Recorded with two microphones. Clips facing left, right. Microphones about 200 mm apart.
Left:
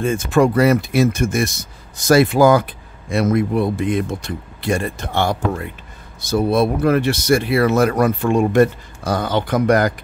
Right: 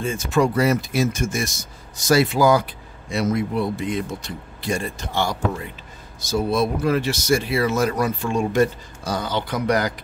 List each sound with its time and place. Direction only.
0.0 s speech: 55° left (ahead or behind)